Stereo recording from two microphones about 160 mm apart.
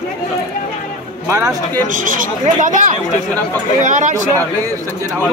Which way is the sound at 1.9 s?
55° right (ahead or behind).